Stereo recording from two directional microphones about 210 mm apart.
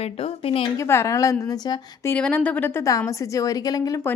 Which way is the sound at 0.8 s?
15° left (ahead or behind).